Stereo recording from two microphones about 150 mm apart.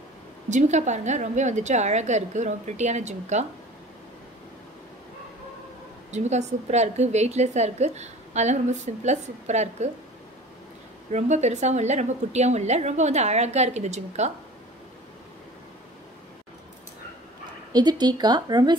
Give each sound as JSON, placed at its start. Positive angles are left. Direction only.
{"t": 0.5, "sound": "a woman's voice", "side_deg": -50}
{"t": 6.1, "sound": "a woman's voice", "side_deg": -50}
{"t": 11.1, "sound": "a woman's voice", "side_deg": -50}
{"t": 17.7, "sound": "speech", "side_deg": -30}